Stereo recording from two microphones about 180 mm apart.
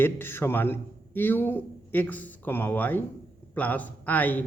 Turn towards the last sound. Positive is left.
turn(degrees=10)  # may be behind; listen again after turning